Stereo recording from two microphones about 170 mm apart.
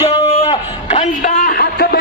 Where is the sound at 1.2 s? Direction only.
60° left (ahead or behind).